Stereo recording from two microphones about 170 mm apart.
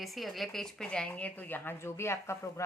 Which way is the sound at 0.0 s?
Centre (ahead or behind).